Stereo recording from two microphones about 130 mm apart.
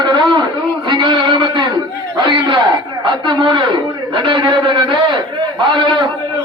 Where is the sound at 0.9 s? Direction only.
35° right (ahead or behind).